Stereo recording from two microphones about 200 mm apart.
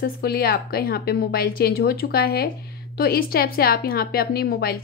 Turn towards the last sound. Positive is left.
turn(degrees=50)  # may be behind; listen again after turning